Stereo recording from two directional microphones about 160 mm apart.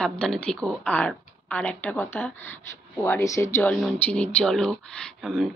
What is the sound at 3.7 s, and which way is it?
Speech, 5° left (ahead or behind).